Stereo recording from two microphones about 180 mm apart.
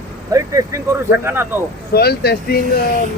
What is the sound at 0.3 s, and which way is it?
Speech, 15° right (ahead or behind).